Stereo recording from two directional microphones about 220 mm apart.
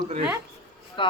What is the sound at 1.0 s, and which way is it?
Speech, 20° left (ahead or behind).